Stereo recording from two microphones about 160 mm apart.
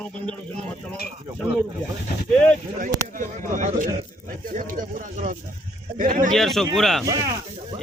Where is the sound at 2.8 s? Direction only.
55° right (ahead or behind).